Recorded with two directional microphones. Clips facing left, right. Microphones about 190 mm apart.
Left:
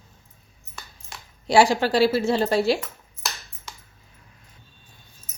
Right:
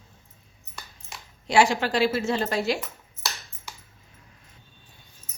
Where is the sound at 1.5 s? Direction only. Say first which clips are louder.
Left 3 dB; 35° left (ahead or behind).